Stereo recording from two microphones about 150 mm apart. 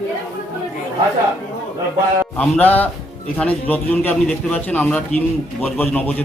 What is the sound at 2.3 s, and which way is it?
A man's voice, 10° left (ahead or behind).